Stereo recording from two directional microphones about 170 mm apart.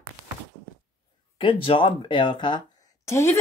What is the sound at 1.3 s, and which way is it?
Speech, 30° left (ahead or behind).